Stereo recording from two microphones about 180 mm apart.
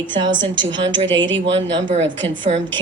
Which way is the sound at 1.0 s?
90° right.